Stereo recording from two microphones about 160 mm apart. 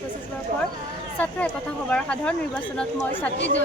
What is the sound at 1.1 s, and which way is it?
A woman's voice, 10° left (ahead or behind).